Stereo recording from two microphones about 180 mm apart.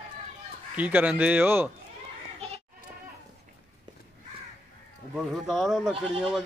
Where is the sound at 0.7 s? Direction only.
10° right (ahead or behind).